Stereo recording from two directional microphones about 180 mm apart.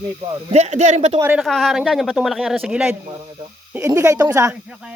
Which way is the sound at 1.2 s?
10° right (ahead or behind).